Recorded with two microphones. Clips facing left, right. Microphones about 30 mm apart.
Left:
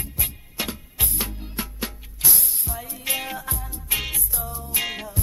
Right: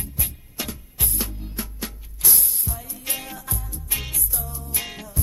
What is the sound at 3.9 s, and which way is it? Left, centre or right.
Music, centre.